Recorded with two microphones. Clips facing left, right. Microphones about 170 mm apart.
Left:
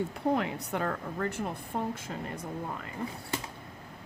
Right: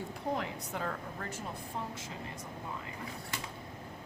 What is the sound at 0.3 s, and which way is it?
A woman's voice, 65° left (ahead or behind).